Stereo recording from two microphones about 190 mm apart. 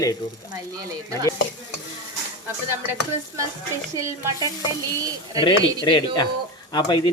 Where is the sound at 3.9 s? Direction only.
15° right (ahead or behind).